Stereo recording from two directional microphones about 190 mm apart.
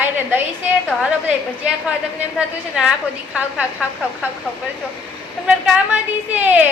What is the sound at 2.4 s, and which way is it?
Speech, 5° right (ahead or behind).